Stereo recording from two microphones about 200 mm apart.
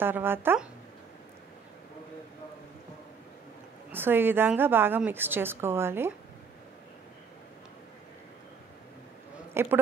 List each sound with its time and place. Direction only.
0.0 s a woman's voice: 10° right (ahead or behind)
3.9 s a woman's voice: 10° right (ahead or behind)
9.5 s speech: 10° right (ahead or behind)